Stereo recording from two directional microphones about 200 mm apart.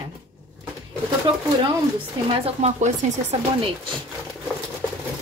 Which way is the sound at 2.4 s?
35° right (ahead or behind).